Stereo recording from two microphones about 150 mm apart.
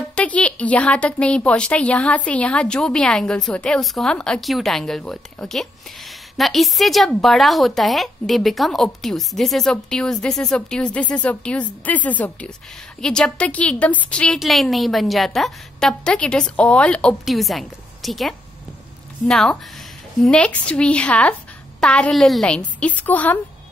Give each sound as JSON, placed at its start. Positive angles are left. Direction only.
{"t": 0.1, "sound": "a woman's voice", "side_deg": 10}